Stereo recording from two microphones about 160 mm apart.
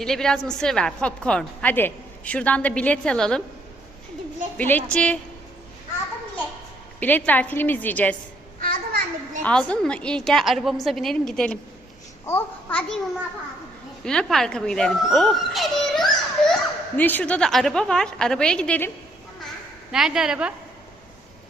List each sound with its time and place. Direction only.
0.0 s a woman's voice: 5° left (ahead or behind)
4.5 s a woman's voice: 10° left (ahead or behind)
7.0 s a woman's voice: 10° left (ahead or behind)
8.6 s children playing: 60° right (ahead or behind)
9.4 s a woman's voice: 5° left (ahead or behind)
14.0 s a child's voice: 5° left (ahead or behind)
19.9 s a woman's voice: 5° right (ahead or behind)